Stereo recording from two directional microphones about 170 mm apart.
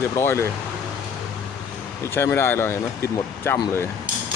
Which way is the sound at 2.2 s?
15° left (ahead or behind).